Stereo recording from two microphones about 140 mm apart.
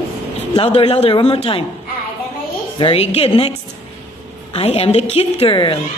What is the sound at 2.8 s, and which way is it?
Speech, 40° left (ahead or behind).